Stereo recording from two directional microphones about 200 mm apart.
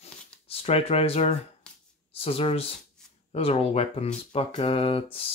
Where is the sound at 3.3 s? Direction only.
30° left (ahead or behind).